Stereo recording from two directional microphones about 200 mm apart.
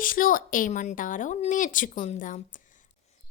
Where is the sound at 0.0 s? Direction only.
45° left (ahead or behind).